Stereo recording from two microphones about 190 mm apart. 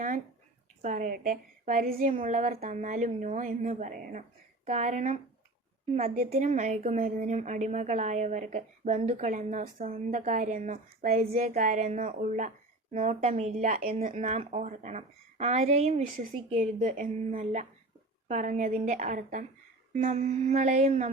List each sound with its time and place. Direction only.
0.8 s a woman's voice: 45° right (ahead or behind)
11.3 s a woman's voice: 35° right (ahead or behind)